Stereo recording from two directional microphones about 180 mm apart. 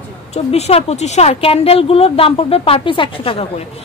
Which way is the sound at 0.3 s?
35° left (ahead or behind).